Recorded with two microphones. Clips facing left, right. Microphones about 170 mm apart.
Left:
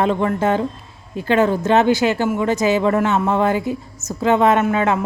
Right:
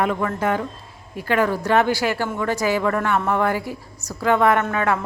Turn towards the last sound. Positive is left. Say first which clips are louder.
# left 3 dB
turn(degrees=20)  # may be behind; listen again after turning